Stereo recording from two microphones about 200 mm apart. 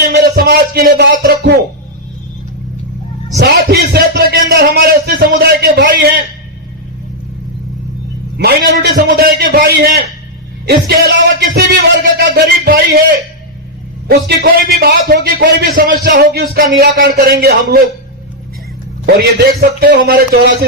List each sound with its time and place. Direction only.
0.1 s music: 50° right (ahead or behind)
3.3 s a sound: 55° right (ahead or behind)
8.4 s a man's voice: 55° right (ahead or behind)
19.5 s a man's voice: 50° right (ahead or behind)